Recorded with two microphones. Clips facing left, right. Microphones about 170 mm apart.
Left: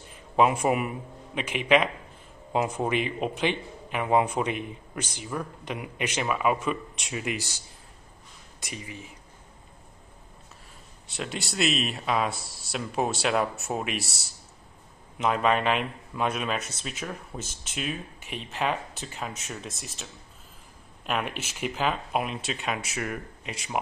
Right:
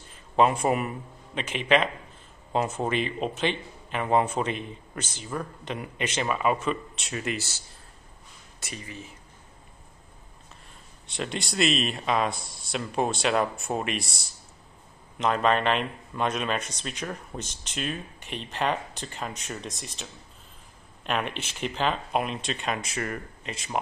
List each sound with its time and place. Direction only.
0.4 s a man's voice: 10° left (ahead or behind)
11.1 s a man's voice: 5° left (ahead or behind)